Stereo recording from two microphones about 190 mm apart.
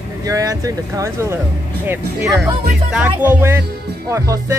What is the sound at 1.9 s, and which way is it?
Speech, 5° right (ahead or behind).